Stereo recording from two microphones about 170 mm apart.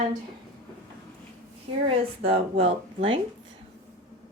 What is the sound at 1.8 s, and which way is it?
Speech, 35° right (ahead or behind).